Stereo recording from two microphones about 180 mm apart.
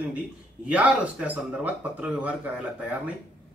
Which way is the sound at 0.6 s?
10° right (ahead or behind).